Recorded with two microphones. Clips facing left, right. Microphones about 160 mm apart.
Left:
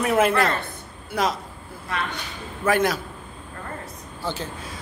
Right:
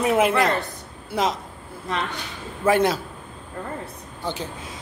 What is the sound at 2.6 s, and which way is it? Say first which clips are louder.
Speech: right 2 dB; 25° right (ahead or behind).